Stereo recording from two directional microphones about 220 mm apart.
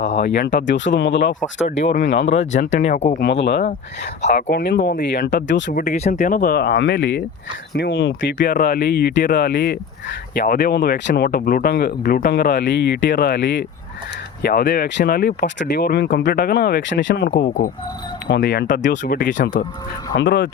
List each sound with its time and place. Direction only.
0.2 s speech: 50° left (ahead or behind)
1.4 s speech: 30° left (ahead or behind)
3.2 s speech: 50° left (ahead or behind)
18.7 s speech: 40° left (ahead or behind)
20.1 s speech: 55° left (ahead or behind)